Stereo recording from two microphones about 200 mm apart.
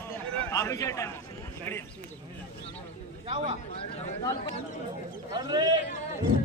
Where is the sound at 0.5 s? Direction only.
15° left (ahead or behind).